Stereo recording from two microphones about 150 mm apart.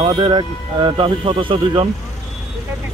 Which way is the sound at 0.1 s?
30° right (ahead or behind).